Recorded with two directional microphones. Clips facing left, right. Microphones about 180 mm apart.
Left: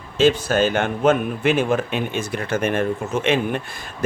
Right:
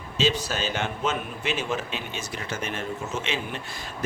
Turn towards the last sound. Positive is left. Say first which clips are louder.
# left 7 dB
turn(degrees=55)  # may be behind; listen again after turning